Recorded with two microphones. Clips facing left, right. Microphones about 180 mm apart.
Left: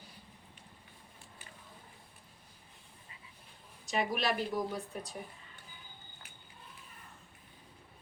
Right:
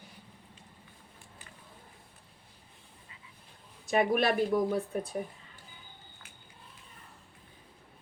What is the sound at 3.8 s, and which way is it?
Speech, 55° right (ahead or behind).